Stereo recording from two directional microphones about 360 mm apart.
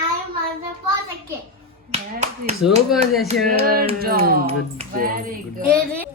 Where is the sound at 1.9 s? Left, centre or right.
Centre.